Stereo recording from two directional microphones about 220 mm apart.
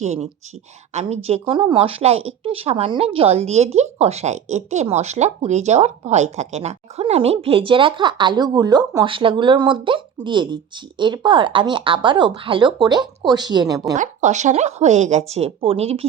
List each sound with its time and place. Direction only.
0.0 s speech: 30° right (ahead or behind)
13.9 s speech: 35° right (ahead or behind)